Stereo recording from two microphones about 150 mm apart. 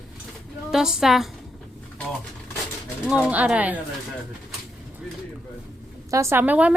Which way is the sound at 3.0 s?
5° right (ahead or behind).